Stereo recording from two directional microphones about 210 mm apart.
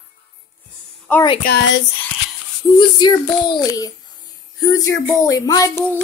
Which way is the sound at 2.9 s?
20° left (ahead or behind).